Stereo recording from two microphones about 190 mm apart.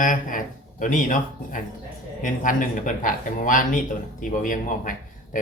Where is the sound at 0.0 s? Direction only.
45° left (ahead or behind).